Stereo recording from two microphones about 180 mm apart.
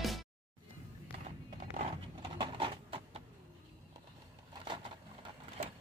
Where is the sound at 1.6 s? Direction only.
40° right (ahead or behind).